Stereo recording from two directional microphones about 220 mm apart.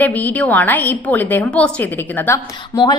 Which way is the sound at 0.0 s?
5° left (ahead or behind).